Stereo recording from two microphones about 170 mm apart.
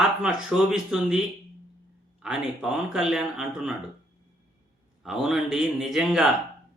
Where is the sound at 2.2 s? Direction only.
5° right (ahead or behind).